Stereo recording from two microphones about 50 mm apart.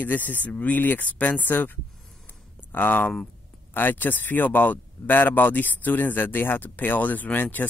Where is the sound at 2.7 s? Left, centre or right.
Left.